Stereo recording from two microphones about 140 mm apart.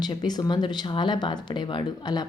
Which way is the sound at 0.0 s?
30° left (ahead or behind).